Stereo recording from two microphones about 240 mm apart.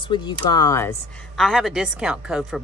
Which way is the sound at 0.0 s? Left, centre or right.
Centre.